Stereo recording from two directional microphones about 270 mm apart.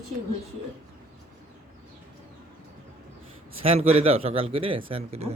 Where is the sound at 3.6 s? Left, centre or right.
Right.